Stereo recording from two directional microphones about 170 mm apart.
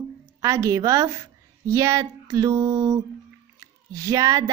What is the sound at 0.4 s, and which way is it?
A woman's voice, 20° right (ahead or behind).